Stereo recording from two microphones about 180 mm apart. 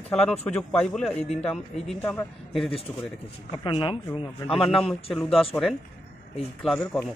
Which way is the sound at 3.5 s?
25° left (ahead or behind).